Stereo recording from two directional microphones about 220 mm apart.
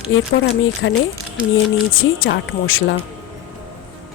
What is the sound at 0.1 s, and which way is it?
Speech, 55° left (ahead or behind).